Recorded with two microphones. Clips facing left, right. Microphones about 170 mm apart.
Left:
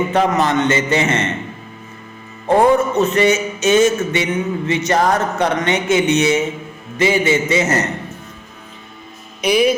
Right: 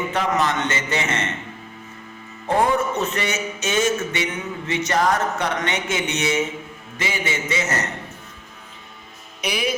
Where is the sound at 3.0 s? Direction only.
20° left (ahead or behind).